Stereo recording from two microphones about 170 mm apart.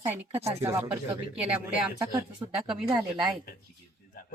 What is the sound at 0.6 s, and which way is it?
Speech, 15° right (ahead or behind).